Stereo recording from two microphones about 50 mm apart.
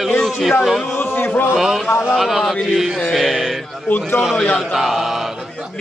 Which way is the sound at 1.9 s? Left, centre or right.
Left.